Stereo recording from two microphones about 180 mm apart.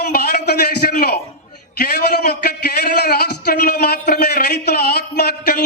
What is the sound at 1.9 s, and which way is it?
A man's voice, 65° left (ahead or behind).